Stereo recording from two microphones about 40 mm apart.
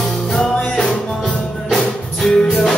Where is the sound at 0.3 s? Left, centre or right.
Centre.